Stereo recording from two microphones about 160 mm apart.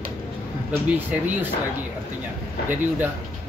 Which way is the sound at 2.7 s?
10° right (ahead or behind).